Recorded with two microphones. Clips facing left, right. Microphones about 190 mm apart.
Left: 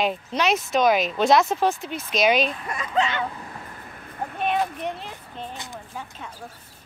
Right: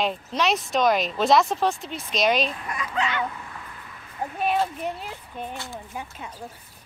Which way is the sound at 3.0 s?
25° left (ahead or behind).